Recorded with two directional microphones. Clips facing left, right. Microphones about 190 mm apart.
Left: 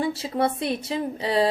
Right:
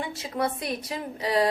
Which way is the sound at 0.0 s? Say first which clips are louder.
Left 5 dB; 30° left (ahead or behind).